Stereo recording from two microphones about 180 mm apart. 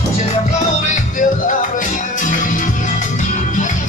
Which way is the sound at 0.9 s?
45° left (ahead or behind).